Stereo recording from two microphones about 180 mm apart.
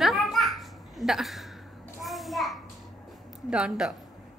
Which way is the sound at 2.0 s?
Centre (ahead or behind).